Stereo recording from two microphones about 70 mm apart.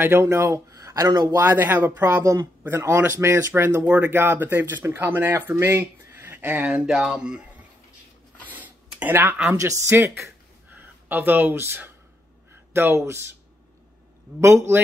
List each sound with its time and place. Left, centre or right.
0.0 s speech: right
0.7 s a sound: right
1.4 s speech: right
2.7 s speech: right
6.3 s a sound: right
6.6 s speech: centre
8.5 s a sound: right
9.0 s speech: right
9.6 s speech: right
10.7 s speech: right
14.4 s speech: right